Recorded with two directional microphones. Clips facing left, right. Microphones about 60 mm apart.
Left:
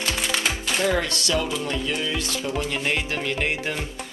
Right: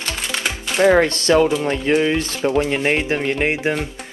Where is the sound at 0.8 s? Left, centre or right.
Right.